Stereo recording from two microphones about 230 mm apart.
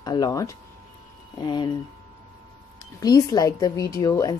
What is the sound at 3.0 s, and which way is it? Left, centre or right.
Speech, centre.